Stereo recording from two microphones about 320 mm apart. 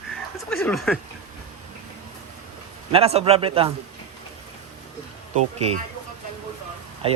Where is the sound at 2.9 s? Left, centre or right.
Centre.